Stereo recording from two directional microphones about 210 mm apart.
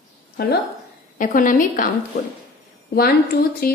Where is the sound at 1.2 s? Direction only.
40° left (ahead or behind).